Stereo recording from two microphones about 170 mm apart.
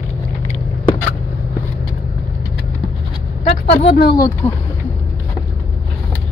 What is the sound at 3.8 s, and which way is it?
Speech, 70° left (ahead or behind).